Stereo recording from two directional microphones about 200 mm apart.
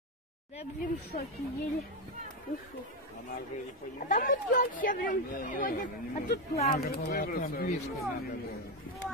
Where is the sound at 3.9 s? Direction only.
40° left (ahead or behind).